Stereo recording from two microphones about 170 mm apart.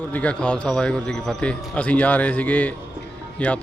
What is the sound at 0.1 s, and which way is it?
A man's voice, 10° left (ahead or behind).